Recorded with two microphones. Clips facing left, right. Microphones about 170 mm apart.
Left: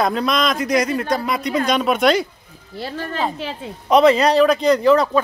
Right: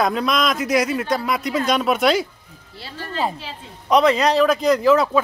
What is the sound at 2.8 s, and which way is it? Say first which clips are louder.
Speech: left 8 dB; 50° left (ahead or behind).